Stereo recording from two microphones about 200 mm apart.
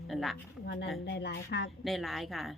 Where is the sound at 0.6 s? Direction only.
55° left (ahead or behind).